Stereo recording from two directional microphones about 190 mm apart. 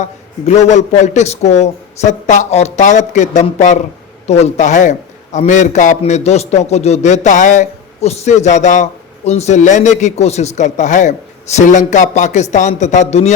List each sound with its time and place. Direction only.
0.0 s a man's voice: 35° left (ahead or behind)